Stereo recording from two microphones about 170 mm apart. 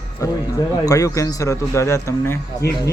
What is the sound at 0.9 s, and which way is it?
A man's voice, 20° left (ahead or behind).